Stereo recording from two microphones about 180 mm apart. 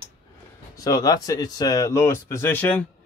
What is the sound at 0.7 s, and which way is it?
Speech, 20° left (ahead or behind).